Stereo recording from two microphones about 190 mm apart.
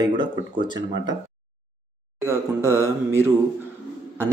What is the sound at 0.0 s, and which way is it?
Speech, 25° right (ahead or behind).